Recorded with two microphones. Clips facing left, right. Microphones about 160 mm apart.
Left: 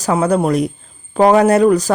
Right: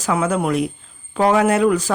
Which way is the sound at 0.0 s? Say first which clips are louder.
Left 4 dB; 35° left (ahead or behind).